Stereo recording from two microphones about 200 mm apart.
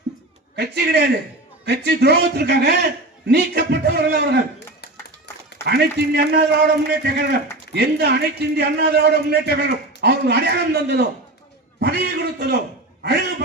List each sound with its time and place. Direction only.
0.5 s a man's voice: 55° right (ahead or behind)
5.6 s a man's voice: 55° right (ahead or behind)
11.8 s a sound: 55° right (ahead or behind)
13.0 s a man's voice: 60° right (ahead or behind)